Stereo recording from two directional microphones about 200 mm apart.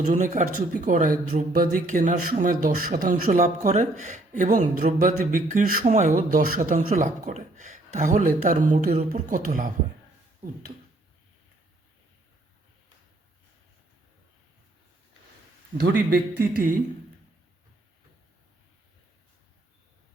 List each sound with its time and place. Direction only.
0.1 s speech: 40° right (ahead or behind)
15.8 s speech: 50° right (ahead or behind)